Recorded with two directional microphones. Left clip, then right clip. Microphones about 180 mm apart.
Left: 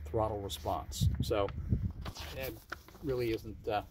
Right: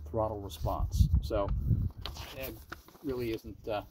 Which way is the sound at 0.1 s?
35° right (ahead or behind).